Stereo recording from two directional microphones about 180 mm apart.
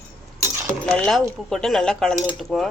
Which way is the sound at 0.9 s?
5° left (ahead or behind).